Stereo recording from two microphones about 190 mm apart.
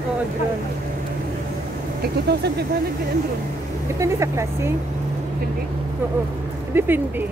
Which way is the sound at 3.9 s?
15° right (ahead or behind).